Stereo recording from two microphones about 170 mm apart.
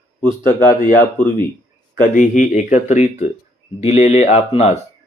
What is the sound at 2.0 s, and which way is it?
Speech, 50° left (ahead or behind).